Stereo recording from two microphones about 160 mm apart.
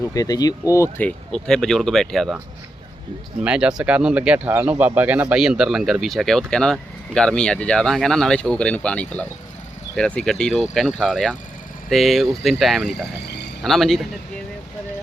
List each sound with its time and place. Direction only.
0.1 s speech: 20° left (ahead or behind); by 2.4 s centre (ahead or behind)
3.4 s speech: 5° right (ahead or behind)
13.2 s a sound: 90° left
13.6 s speech: centre (ahead or behind)